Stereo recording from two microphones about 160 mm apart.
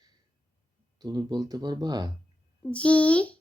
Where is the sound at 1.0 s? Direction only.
25° right (ahead or behind).